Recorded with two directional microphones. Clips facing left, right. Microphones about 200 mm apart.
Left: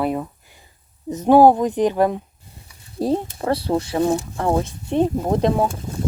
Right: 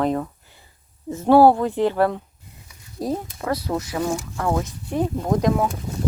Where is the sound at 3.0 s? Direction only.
30° left (ahead or behind).